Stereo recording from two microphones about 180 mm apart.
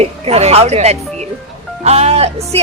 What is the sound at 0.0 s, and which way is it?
Speech, 35° right (ahead or behind).